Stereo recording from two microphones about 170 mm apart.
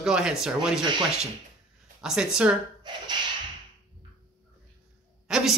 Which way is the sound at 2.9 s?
25° right (ahead or behind).